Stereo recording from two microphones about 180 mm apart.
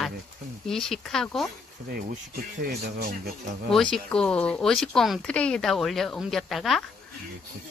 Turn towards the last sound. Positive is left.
turn(degrees=0)  # may be behind; listen again after turning